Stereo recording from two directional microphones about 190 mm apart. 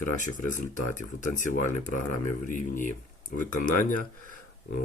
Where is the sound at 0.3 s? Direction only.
45° left (ahead or behind).